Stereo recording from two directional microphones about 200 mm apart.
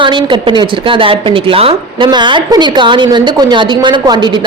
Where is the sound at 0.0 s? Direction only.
25° right (ahead or behind).